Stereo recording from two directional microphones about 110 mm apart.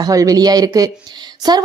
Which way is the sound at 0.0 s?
35° right (ahead or behind).